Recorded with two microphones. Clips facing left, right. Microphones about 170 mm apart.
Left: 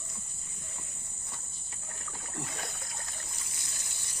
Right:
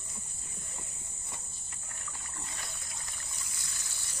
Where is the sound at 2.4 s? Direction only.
60° left (ahead or behind).